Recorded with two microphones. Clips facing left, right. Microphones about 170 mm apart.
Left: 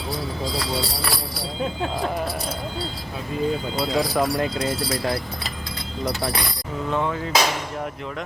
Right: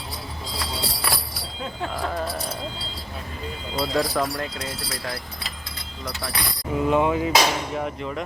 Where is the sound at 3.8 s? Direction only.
10° left (ahead or behind).